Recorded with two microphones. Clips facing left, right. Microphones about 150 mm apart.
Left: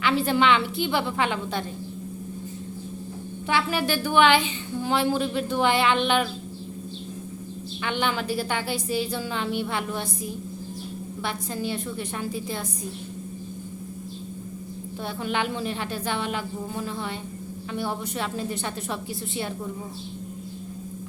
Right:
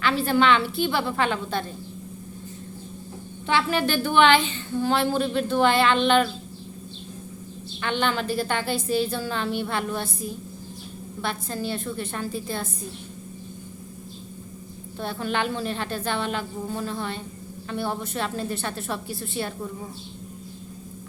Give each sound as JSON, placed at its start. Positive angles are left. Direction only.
{"t": 0.0, "sound": "a woman's voice", "side_deg": 15}
{"t": 3.4, "sound": "a woman's voice", "side_deg": 10}
{"t": 7.8, "sound": "a woman's voice", "side_deg": 10}
{"t": 15.0, "sound": "a woman's voice", "side_deg": 15}